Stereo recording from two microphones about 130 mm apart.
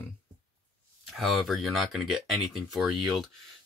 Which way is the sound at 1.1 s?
Centre (ahead or behind).